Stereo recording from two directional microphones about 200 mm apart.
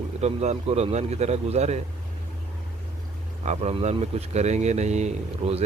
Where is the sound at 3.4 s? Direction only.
30° right (ahead or behind).